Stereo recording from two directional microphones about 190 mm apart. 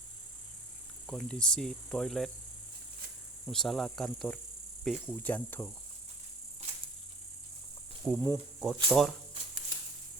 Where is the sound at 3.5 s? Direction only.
Centre (ahead or behind).